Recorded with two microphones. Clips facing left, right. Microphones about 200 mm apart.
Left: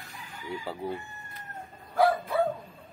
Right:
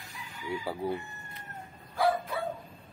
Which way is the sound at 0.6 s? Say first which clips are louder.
Right 2 dB; 15° right (ahead or behind).